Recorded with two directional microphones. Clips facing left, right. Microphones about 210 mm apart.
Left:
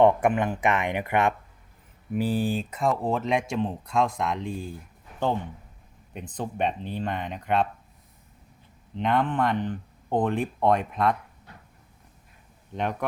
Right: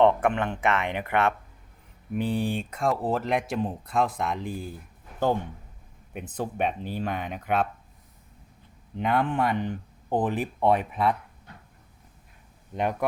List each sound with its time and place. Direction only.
0.0 s speech: 10° left (ahead or behind)
6.1 s speech: 5° right (ahead or behind)
9.0 s speech: 5° right (ahead or behind)
12.7 s speech: 5° right (ahead or behind)